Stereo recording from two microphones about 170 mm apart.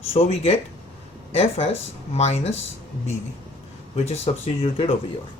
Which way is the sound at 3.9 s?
40° left (ahead or behind).